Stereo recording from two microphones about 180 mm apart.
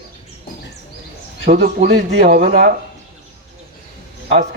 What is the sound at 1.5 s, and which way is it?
Speech, 45° right (ahead or behind).